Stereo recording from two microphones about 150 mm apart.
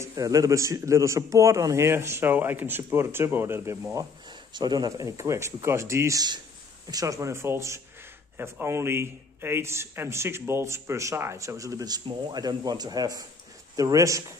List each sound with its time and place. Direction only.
0.0 s a man's voice: 25° right (ahead or behind)